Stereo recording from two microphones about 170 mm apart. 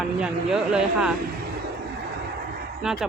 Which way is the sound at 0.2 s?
5° right (ahead or behind).